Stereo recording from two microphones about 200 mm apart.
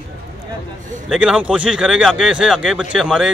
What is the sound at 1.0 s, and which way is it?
Speech, 5° right (ahead or behind).